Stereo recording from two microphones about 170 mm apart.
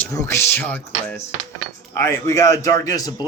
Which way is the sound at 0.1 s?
15° left (ahead or behind).